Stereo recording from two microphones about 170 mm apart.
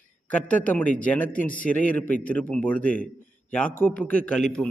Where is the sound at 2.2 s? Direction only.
10° left (ahead or behind).